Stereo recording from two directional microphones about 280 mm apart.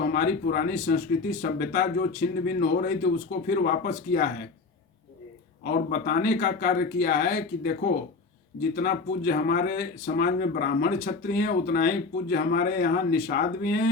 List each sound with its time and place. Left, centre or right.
0.0 s speech: left
5.6 s speech: left